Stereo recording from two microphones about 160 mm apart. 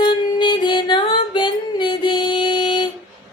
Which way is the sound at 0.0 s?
30° left (ahead or behind).